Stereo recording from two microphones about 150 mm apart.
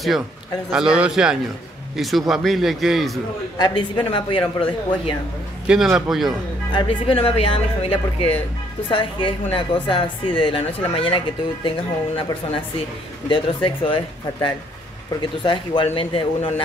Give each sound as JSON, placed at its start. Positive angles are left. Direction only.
{"t": 0.7, "sound": "a man's voice", "side_deg": -5}
{"t": 3.5, "sound": "a man's voice", "side_deg": 30}
{"t": 5.7, "sound": "a man's voice", "side_deg": -5}
{"t": 6.7, "sound": "a woman's voice", "side_deg": 35}